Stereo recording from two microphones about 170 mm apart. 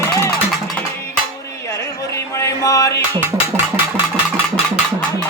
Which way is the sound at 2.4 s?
20° left (ahead or behind).